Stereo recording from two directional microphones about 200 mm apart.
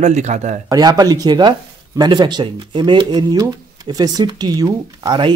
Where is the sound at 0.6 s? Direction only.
20° right (ahead or behind).